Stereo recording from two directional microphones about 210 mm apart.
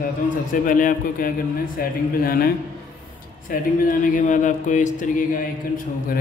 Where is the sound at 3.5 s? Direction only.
40° left (ahead or behind).